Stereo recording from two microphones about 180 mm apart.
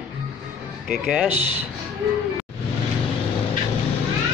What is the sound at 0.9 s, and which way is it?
Speech, 5° right (ahead or behind).